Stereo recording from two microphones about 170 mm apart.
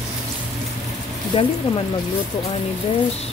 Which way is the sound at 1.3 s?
30° left (ahead or behind).